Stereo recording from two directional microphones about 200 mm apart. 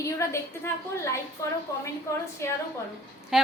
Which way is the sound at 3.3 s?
Centre (ahead or behind).